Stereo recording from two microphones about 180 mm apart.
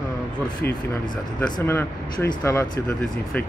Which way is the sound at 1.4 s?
20° left (ahead or behind).